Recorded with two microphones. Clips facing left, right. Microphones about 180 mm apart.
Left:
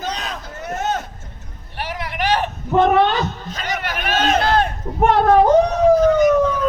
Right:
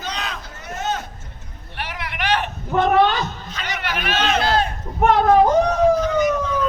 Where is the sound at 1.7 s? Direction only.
40° left (ahead or behind).